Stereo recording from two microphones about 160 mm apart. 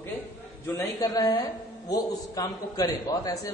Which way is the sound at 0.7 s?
25° left (ahead or behind).